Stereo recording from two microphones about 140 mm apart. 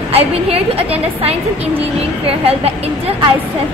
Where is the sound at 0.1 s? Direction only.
45° right (ahead or behind).